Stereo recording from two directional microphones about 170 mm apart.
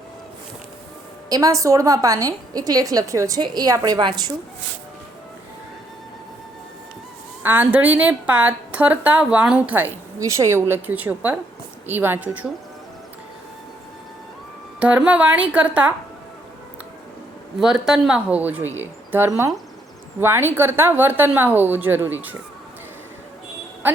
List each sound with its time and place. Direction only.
1.3 s a woman's voice: 20° right (ahead or behind)
7.4 s a woman's voice: 10° right (ahead or behind)
14.8 s a woman's voice: 10° right (ahead or behind)
17.6 s a woman's voice: 5° right (ahead or behind)